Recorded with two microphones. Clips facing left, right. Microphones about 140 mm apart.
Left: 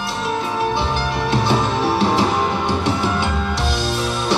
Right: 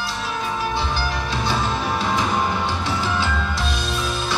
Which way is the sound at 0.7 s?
60° left (ahead or behind).